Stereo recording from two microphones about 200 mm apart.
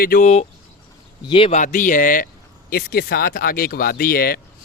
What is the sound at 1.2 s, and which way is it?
Speech, 25° left (ahead or behind).